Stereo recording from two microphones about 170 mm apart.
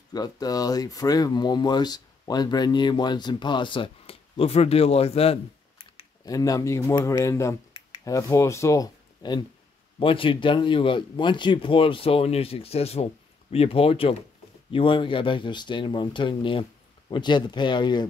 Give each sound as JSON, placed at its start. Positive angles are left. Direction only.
{"t": 0.1, "sound": "speech", "side_deg": 20}
{"t": 6.2, "sound": "speech", "side_deg": 20}